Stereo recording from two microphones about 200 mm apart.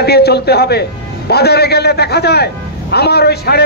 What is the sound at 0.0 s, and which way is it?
A man's voice, 55° left (ahead or behind).